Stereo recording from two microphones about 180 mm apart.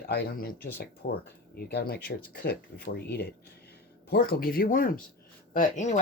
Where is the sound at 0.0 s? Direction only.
60° left (ahead or behind).